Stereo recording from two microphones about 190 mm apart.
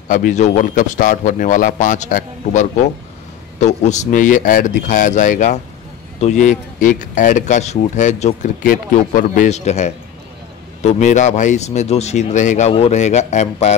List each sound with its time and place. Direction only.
0.1 s speech: 40° left (ahead or behind)